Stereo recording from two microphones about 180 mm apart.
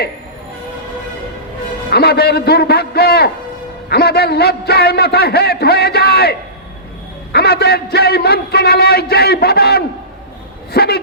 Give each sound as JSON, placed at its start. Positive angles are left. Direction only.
{"t": 1.9, "sound": "a man's voice", "side_deg": 60}
{"t": 7.3, "sound": "a man's voice", "side_deg": 60}